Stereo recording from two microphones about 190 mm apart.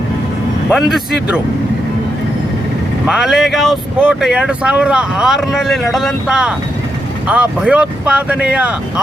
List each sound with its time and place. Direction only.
0.7 s speech: centre (ahead or behind)
3.1 s speech: centre (ahead or behind)